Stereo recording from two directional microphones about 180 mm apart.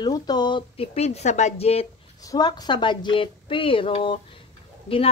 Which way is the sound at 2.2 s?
20° left (ahead or behind).